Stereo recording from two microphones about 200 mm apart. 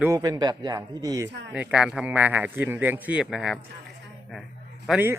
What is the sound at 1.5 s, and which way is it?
Speech, 5° right (ahead or behind).